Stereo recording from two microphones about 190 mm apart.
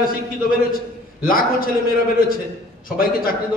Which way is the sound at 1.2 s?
50° left (ahead or behind).